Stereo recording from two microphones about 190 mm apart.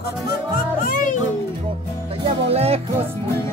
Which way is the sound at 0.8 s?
45° left (ahead or behind).